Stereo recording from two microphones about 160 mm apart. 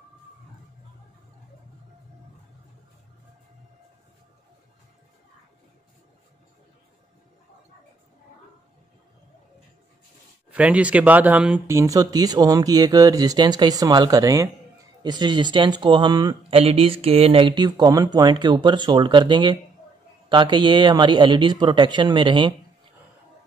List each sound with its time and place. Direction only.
10.5 s speech: 10° right (ahead or behind); by 22.5 s 30° right (ahead or behind)